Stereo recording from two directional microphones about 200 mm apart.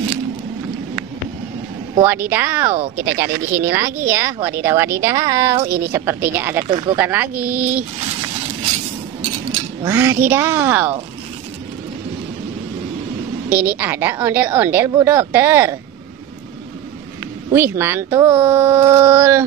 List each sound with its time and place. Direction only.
2.0 s a woman's voice: 10° right (ahead or behind)
6.7 s speech: 25° right (ahead or behind)
7.0 s a woman's voice: 10° right (ahead or behind)
9.8 s a woman's voice: 10° right (ahead or behind)
13.5 s a woman's voice: 10° right (ahead or behind)
17.5 s a woman's voice: 10° right (ahead or behind)